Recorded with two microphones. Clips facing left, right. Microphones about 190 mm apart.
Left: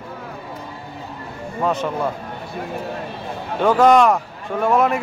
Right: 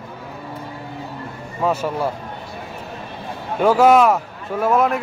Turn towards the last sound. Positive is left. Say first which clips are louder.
# even
turn(degrees=0)  # may be behind; listen again after turning